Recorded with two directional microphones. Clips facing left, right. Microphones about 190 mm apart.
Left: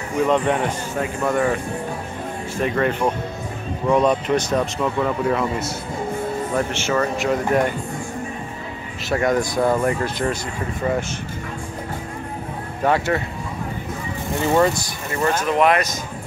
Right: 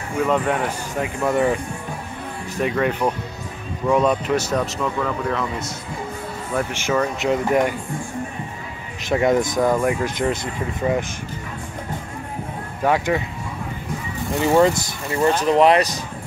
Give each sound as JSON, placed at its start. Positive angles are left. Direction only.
{"t": 0.3, "sound": "speech", "side_deg": -5}
{"t": 2.7, "sound": "speech", "side_deg": -5}
{"t": 4.6, "sound": "speech", "side_deg": 10}
{"t": 6.7, "sound": "speech", "side_deg": -10}
{"t": 9.1, "sound": "speech", "side_deg": -20}
{"t": 9.6, "sound": "speech", "side_deg": 5}
{"t": 9.8, "sound": "speech", "side_deg": -15}
{"t": 12.8, "sound": "speech", "side_deg": -10}
{"t": 14.4, "sound": "speech", "side_deg": -15}
{"t": 15.4, "sound": "speech", "side_deg": -35}